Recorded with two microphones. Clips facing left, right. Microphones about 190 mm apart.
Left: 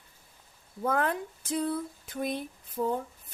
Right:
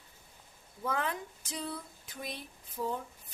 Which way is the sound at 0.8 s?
55° left (ahead or behind).